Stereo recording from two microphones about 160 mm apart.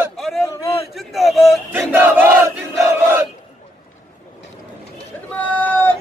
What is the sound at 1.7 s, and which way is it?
Battle cry, 15° right (ahead or behind).